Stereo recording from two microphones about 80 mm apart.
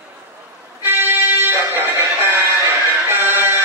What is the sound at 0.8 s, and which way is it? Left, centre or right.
Music, right.